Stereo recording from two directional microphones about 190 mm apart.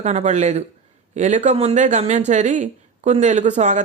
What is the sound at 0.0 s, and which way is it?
Speech, 35° right (ahead or behind).